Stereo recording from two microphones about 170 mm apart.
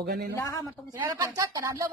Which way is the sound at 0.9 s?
20° right (ahead or behind).